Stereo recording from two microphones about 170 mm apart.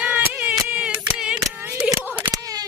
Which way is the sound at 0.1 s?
10° right (ahead or behind).